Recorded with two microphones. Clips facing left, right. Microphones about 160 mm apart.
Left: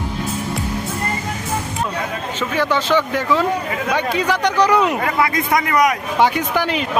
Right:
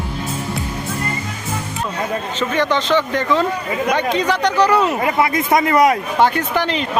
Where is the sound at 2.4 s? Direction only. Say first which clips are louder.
Right 1 dB; 10° left (ahead or behind).